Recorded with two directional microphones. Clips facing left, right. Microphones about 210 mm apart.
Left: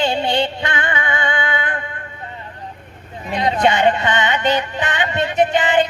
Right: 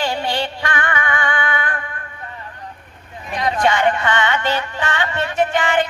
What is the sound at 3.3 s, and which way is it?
Music, 25° left (ahead or behind).